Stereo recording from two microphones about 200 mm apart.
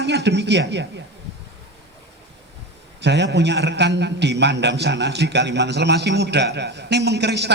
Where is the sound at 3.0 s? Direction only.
60° right (ahead or behind).